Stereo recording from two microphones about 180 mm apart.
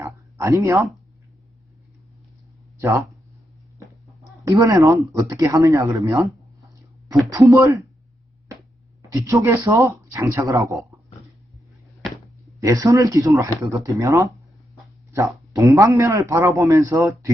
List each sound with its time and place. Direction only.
0.0 s a sound: 15° right (ahead or behind)
2.7 s speech: 15° right (ahead or behind)
4.4 s a man's voice: 20° right (ahead or behind)
7.3 s a man's voice: 15° right (ahead or behind)
9.0 s a man's voice: 15° right (ahead or behind)
12.5 s a man's voice: 20° right (ahead or behind)